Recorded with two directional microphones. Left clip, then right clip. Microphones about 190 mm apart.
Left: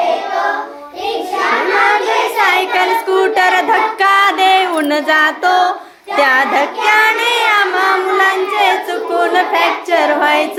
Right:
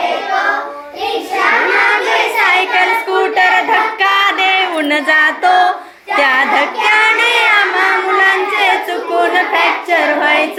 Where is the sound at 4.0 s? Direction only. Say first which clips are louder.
Left 1 dB; 30° left (ahead or behind).